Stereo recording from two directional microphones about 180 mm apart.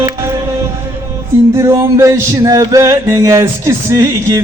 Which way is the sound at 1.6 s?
15° right (ahead or behind).